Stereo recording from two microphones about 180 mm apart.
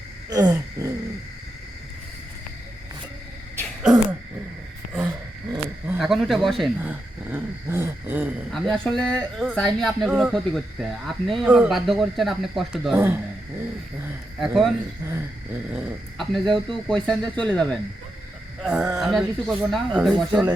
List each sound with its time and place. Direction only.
0.3 s gasp: 20° right (ahead or behind)
5.5 s a sound: 15° right (ahead or behind)
6.0 s speech: centre (ahead or behind)
6.7 s a sound: 10° right (ahead or behind)
8.4 s speech: centre (ahead or behind)
14.3 s speech: centre (ahead or behind)
15.0 s a sound: 15° right (ahead or behind)
15.7 s speech: centre (ahead or behind)
18.6 s speech: 5° right (ahead or behind)